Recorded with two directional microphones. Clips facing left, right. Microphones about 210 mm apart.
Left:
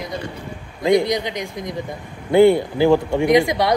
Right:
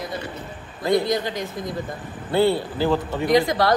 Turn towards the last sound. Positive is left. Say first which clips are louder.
# left 3 dB
turn(degrees=20)  # may be behind; listen again after turning